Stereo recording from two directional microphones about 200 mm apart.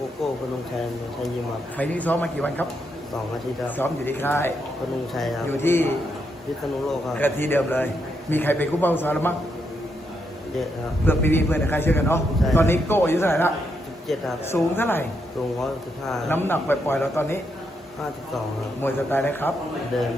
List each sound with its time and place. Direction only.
1.8 s a man's voice: 5° left (ahead or behind)
3.8 s a man's voice: 10° left (ahead or behind)
7.1 s a man's voice: 10° left (ahead or behind)
11.0 s a man's voice: 10° left (ahead or behind)
14.1 s a man's voice: centre (ahead or behind)
16.0 s a man's voice: 10° left (ahead or behind)
18.8 s a man's voice: 10° left (ahead or behind)